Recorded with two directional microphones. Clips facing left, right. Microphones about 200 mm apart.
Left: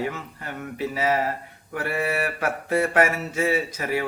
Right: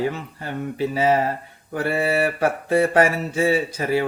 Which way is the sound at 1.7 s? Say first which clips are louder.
Right 5 dB; 30° right (ahead or behind).